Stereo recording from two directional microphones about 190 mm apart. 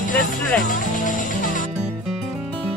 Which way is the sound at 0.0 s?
40° left (ahead or behind).